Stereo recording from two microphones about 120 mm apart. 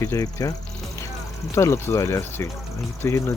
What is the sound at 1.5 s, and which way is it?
Speech, 20° left (ahead or behind).